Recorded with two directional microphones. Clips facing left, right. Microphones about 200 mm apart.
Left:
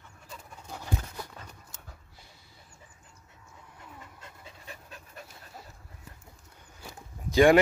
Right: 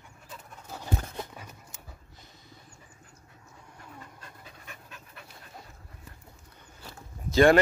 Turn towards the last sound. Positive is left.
turn(degrees=15)  # may be behind; listen again after turning